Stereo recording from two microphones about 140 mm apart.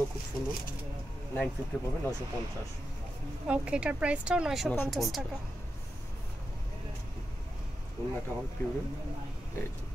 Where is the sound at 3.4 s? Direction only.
10° right (ahead or behind).